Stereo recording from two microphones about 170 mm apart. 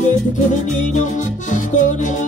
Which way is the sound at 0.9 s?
45° left (ahead or behind).